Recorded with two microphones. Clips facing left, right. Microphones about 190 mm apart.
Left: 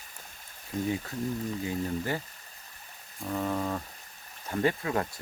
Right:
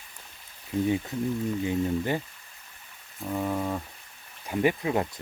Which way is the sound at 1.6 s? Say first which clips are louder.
Right 5 dB; 20° right (ahead or behind).